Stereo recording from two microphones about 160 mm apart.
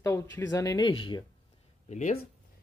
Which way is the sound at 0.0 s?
20° left (ahead or behind).